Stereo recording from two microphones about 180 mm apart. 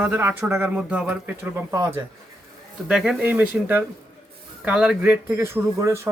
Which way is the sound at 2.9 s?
5° right (ahead or behind).